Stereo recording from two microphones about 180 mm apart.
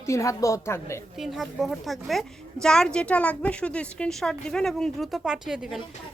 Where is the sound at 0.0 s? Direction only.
15° left (ahead or behind).